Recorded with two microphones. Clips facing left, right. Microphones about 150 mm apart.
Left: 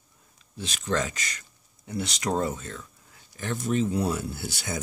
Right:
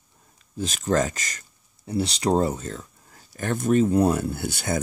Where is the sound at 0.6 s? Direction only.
45° right (ahead or behind).